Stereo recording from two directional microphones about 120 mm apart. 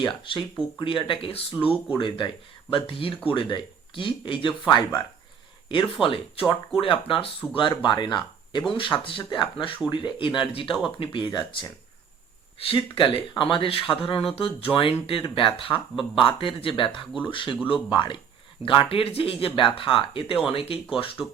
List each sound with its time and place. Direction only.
0.8 s speech: 45° left (ahead or behind)
1.5 s speech: 10° right (ahead or behind)
2.0 s speech: 45° left (ahead or behind)
5.6 s speech: 45° left (ahead or behind)
12.5 s speech: 50° left (ahead or behind)